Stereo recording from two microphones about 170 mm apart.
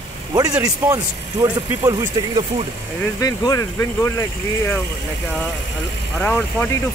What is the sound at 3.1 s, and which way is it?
Speech, 20° left (ahead or behind).